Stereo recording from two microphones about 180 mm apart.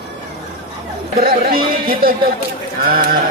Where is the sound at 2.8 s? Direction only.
55° right (ahead or behind).